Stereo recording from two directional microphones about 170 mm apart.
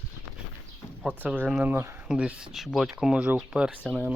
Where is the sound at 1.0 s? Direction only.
10° right (ahead or behind).